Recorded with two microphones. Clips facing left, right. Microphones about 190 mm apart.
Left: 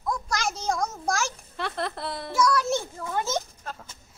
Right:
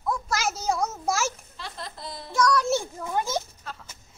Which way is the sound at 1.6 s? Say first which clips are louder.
Left 8 dB; 65° left (ahead or behind).